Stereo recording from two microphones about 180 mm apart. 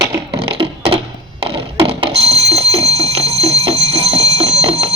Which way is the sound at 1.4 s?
30° right (ahead or behind).